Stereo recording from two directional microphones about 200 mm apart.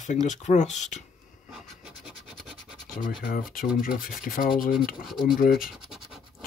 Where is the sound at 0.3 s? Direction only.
35° left (ahead or behind).